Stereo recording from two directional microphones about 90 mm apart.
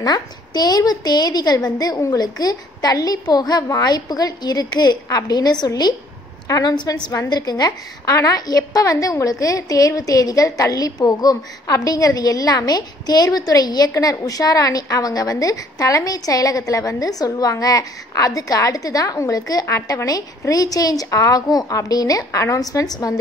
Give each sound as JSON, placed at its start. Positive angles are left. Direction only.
{"t": 0.0, "sound": "a woman's voice", "side_deg": 50}